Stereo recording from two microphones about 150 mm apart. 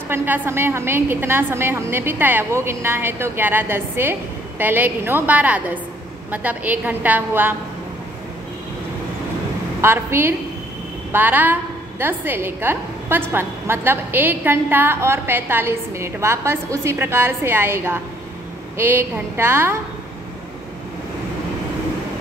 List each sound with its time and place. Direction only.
0.1 s a woman's voice: 15° right (ahead or behind)
9.8 s a woman's voice: 15° right (ahead or behind)